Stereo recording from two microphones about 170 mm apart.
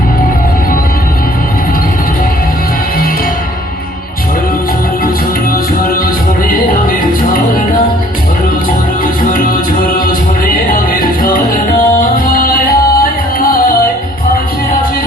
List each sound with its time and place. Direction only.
9.3 s music: 55° left (ahead or behind)